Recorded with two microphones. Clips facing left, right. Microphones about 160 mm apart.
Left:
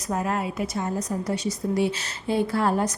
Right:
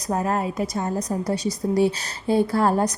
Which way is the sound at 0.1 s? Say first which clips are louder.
Right 3 dB; 40° right (ahead or behind).